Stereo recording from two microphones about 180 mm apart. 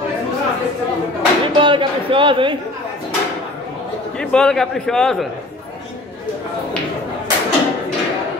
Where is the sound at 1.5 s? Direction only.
30° right (ahead or behind).